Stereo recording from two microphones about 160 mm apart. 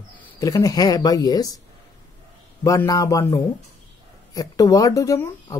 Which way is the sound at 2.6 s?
20° left (ahead or behind).